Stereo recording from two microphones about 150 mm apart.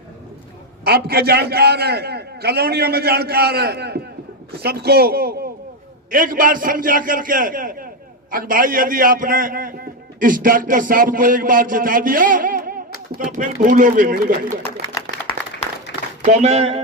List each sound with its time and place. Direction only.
0.9 s a man's voice: 90° right
6.1 s a man's voice: 65° right (ahead or behind)
16.2 s speech: 50° right (ahead or behind)